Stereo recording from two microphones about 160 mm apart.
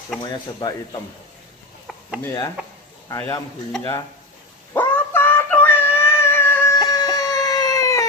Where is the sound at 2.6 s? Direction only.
10° right (ahead or behind).